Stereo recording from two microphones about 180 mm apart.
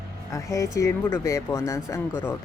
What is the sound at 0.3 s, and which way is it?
Speech, 15° left (ahead or behind).